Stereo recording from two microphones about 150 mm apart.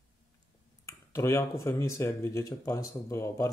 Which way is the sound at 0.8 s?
20° left (ahead or behind).